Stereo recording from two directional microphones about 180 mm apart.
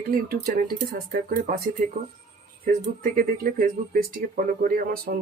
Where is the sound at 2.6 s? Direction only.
55° right (ahead or behind).